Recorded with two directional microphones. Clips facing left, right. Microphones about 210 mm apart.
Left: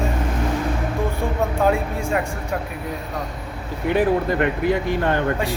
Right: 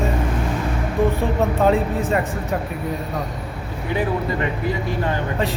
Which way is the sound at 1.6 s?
Centre (ahead or behind).